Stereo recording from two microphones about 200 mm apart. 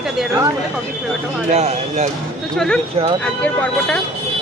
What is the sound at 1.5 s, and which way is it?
Speech, 35° right (ahead or behind).